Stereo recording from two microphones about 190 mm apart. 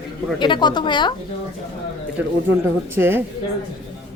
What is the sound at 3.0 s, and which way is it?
Speech, 10° right (ahead or behind).